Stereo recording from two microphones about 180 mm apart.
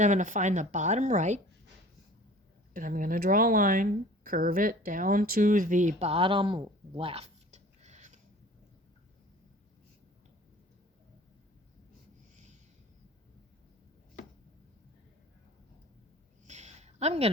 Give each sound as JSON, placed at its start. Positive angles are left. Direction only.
{"t": 0.0, "sound": "speech", "side_deg": -45}
{"t": 2.7, "sound": "speech", "side_deg": -50}
{"t": 16.5, "sound": "a sound", "side_deg": -40}